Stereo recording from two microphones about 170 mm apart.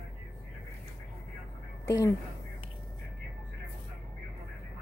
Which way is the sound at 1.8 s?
20° left (ahead or behind).